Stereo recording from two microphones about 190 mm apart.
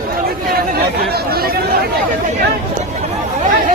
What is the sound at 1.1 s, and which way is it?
Chatter, 55° right (ahead or behind).